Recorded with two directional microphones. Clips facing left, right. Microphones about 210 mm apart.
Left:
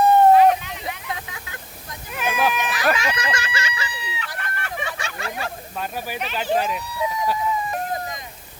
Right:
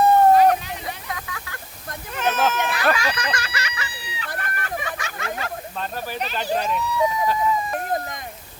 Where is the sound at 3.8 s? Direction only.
35° right (ahead or behind).